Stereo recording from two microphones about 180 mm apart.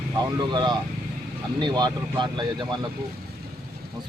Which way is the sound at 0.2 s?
25° right (ahead or behind).